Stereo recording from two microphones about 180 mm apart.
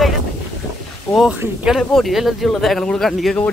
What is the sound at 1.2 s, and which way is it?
Speech, 5° right (ahead or behind).